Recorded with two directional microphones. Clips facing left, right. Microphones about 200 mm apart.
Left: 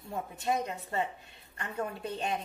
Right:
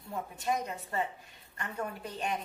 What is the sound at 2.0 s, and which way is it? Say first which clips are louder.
Speech: left 2 dB; 25° left (ahead or behind).